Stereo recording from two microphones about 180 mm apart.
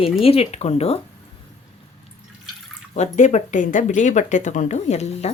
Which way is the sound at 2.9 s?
40° left (ahead or behind).